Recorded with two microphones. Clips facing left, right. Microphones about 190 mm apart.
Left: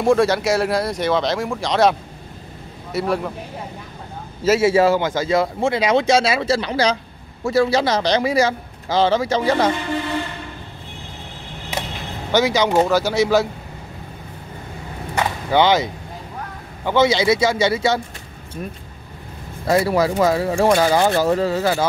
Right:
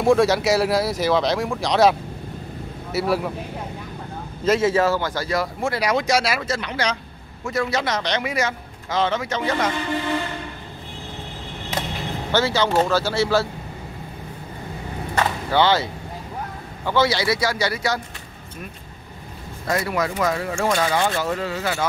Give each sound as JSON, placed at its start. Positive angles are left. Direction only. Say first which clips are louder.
{"t": 0.0, "sound": "speech", "louder": "left 1 dB", "side_deg": 0}
{"t": 4.5, "sound": "a man's voice", "louder": "left 4 dB", "side_deg": 10}
{"t": 12.3, "sound": "speech", "louder": "left 3 dB", "side_deg": 15}
{"t": 15.1, "sound": "speech", "louder": "left 2 dB", "side_deg": 15}
{"t": 19.7, "sound": "a man's voice", "louder": "left 6 dB", "side_deg": 30}